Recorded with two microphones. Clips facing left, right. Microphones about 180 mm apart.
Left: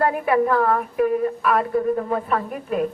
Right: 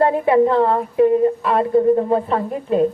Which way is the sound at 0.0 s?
25° right (ahead or behind).